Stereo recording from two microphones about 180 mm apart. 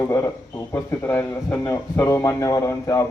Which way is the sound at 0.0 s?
15° left (ahead or behind).